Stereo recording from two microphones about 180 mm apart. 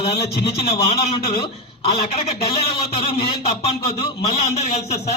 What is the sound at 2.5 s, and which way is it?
A man's voice, 30° left (ahead or behind).